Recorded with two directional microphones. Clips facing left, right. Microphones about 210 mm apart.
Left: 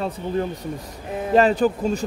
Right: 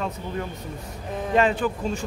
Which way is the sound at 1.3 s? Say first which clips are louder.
Left 5 dB; 40° left (ahead or behind).